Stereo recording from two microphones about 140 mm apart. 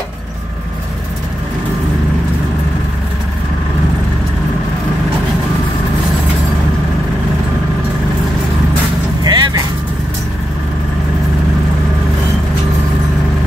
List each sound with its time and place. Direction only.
9.2 s vehicle: 30° right (ahead or behind)